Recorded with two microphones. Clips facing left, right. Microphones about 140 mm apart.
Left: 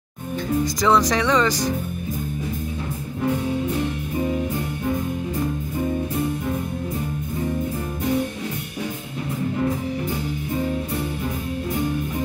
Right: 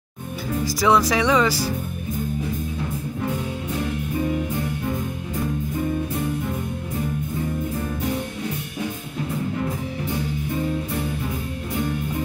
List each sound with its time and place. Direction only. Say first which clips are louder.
0.8 s speech: right 1 dB; 5° right (ahead or behind)